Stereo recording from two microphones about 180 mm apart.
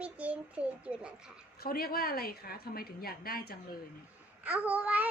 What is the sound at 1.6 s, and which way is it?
Speech, 55° left (ahead or behind).